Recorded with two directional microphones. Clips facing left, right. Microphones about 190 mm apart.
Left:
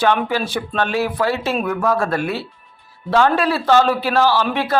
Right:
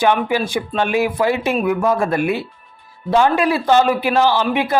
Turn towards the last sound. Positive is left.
turn(degrees=-15)  # may be behind; listen again after turning